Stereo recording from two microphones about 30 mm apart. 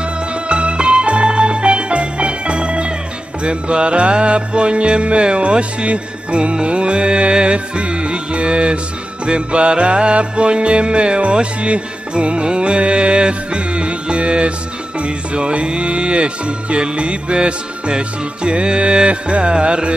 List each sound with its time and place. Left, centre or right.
0.5 s music: right